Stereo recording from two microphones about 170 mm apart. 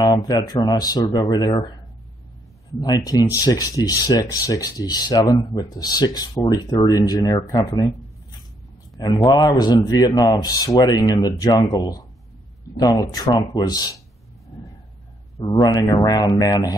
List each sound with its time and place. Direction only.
0.0 s speech: 25° left (ahead or behind)
2.8 s speech: 20° left (ahead or behind)
8.9 s speech: 25° left (ahead or behind)
14.5 s vehicle: 25° left (ahead or behind)
15.3 s speech: 25° left (ahead or behind)